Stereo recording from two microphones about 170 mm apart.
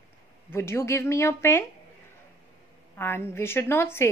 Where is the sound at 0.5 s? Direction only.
15° left (ahead or behind).